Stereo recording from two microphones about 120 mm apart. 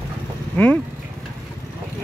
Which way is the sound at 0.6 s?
10° left (ahead or behind).